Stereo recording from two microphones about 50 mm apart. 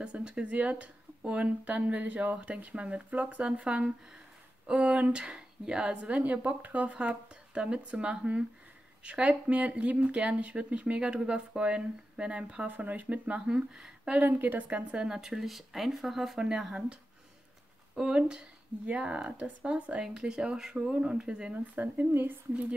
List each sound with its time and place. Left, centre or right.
0.0 s speech: right
13.6 s speech: centre
14.1 s speech: right
15.0 s speech: centre
16.3 s speech: centre
21.7 s speech: right